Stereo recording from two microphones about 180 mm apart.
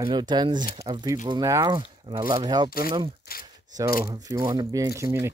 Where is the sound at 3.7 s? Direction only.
20° right (ahead or behind).